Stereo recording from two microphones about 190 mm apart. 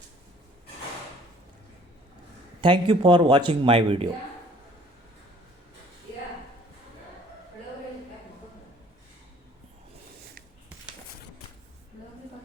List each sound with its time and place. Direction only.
2.6 s speech: 25° right (ahead or behind)